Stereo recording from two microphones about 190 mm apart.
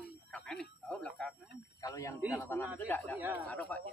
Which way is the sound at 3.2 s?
10° right (ahead or behind).